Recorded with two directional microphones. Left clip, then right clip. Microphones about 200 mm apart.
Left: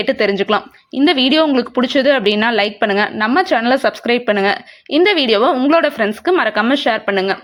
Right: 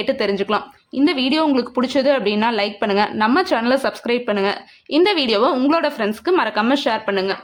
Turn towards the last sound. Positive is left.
turn(degrees=20)  # may be behind; listen again after turning